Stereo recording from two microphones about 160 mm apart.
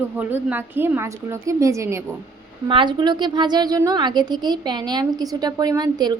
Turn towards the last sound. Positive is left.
turn(degrees=-25)  # may be behind; listen again after turning